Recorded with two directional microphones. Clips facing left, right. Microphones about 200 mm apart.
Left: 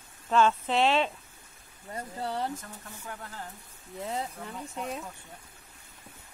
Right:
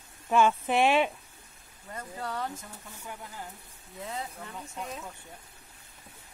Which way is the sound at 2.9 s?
10° right (ahead or behind).